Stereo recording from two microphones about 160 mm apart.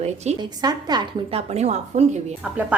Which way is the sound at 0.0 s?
45° right (ahead or behind).